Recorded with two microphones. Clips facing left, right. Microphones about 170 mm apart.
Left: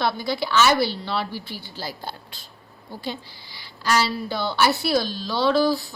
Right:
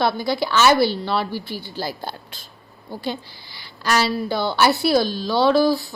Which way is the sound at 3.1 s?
60° right (ahead or behind).